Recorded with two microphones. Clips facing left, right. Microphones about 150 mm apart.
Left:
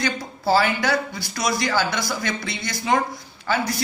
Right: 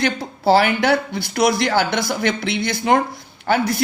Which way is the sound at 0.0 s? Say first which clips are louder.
Right 5 dB; 65° right (ahead or behind).